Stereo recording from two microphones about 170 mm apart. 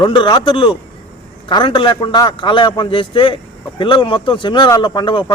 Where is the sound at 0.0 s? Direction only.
25° left (ahead or behind).